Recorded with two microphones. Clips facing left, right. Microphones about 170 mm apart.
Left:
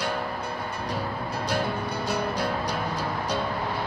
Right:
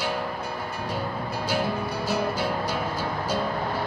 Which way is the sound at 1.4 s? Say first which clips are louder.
Right 1 dB; 5° right (ahead or behind).